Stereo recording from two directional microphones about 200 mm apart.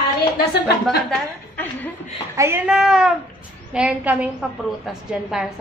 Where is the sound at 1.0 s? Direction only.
10° left (ahead or behind).